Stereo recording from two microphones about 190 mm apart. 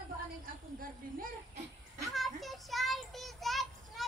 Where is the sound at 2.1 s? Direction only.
Centre (ahead or behind).